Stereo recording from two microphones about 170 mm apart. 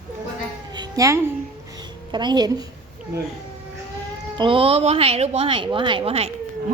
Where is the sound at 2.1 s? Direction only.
25° right (ahead or behind).